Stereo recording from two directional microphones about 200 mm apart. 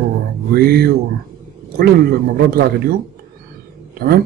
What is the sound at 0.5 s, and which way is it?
Speech, 50° right (ahead or behind).